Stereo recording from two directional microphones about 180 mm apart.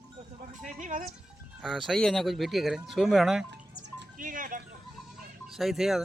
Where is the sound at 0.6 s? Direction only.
45° right (ahead or behind).